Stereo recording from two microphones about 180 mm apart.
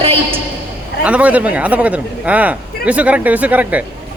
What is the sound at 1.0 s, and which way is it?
Speech, 5° right (ahead or behind).